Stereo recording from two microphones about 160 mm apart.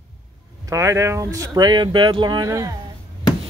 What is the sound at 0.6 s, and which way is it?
Speech, 20° right (ahead or behind).